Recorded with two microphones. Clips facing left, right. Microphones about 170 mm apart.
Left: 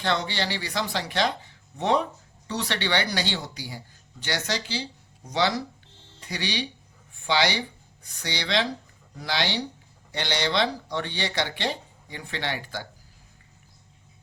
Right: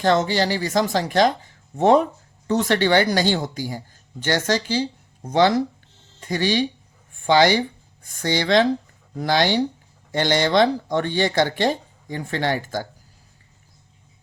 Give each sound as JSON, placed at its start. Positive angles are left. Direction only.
{"t": 0.0, "sound": "speech", "side_deg": -40}